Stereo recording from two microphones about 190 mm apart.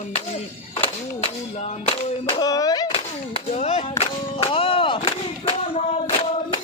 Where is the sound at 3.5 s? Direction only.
35° left (ahead or behind).